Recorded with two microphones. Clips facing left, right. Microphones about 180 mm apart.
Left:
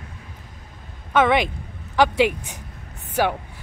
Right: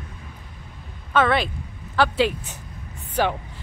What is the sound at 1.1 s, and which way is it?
Speech, 15° left (ahead or behind).